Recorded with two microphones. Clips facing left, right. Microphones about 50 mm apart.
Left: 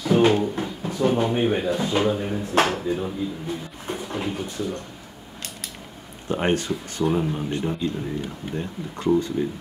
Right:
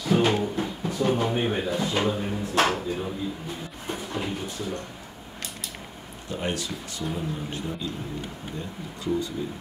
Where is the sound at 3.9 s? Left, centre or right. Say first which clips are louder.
Left 2 dB; centre.